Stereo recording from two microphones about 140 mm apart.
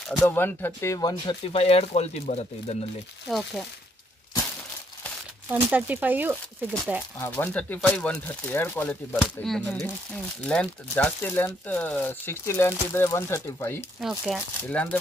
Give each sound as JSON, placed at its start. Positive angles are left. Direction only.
{"t": 0.2, "sound": "speech", "side_deg": 15}
{"t": 1.2, "sound": "speech", "side_deg": 45}
{"t": 3.3, "sound": "speech", "side_deg": 0}
{"t": 5.5, "sound": "speech", "side_deg": -10}
{"t": 7.2, "sound": "speech", "side_deg": 15}
{"t": 14.0, "sound": "speech", "side_deg": 0}
{"t": 14.7, "sound": "speech", "side_deg": 10}